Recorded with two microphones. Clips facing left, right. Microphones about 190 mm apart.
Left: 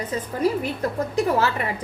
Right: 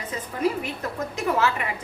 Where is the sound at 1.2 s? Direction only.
35° left (ahead or behind).